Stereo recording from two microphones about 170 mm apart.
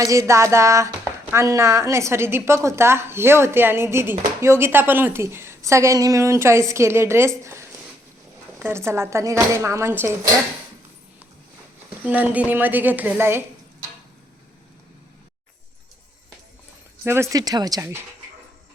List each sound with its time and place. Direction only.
0.0 s a woman's voice: 20° right (ahead or behind)
12.0 s a woman's voice: 10° right (ahead or behind)
17.0 s a woman's voice: 15° right (ahead or behind)